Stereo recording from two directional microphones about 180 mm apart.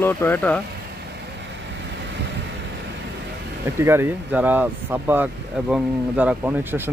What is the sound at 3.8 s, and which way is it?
Speech, 15° right (ahead or behind).